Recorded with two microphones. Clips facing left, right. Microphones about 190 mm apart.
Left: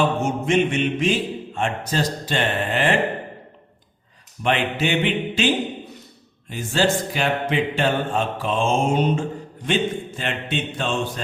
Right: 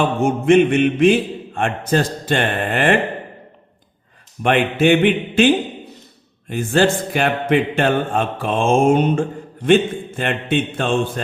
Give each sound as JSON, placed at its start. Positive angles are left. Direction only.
{"t": 0.2, "sound": "a man's voice", "side_deg": -55}
{"t": 4.4, "sound": "mantra", "side_deg": -55}
{"t": 6.5, "sound": "mantra", "side_deg": -55}